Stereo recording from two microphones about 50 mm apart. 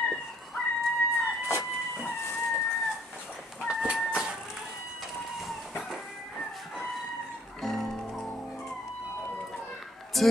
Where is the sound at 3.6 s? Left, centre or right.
Centre.